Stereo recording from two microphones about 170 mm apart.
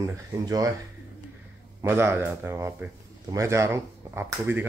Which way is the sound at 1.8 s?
15° right (ahead or behind).